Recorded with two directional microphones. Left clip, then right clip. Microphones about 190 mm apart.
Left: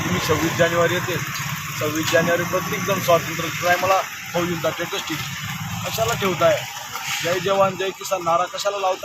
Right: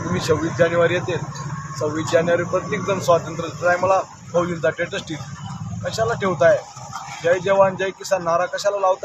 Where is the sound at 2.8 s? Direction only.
15° right (ahead or behind).